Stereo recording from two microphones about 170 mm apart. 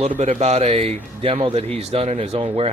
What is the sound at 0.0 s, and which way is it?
Speech, 40° right (ahead or behind).